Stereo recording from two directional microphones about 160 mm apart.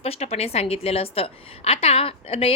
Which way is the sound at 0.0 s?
40° left (ahead or behind).